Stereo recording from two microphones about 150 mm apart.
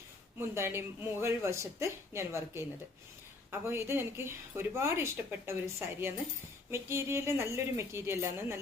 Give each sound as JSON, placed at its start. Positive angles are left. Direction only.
{"t": 0.3, "sound": "speech", "side_deg": -15}
{"t": 3.7, "sound": "speech", "side_deg": -15}